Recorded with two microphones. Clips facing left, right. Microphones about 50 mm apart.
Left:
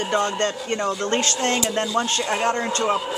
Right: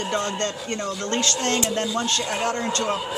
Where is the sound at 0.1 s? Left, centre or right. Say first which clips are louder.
Left 5 dB; centre.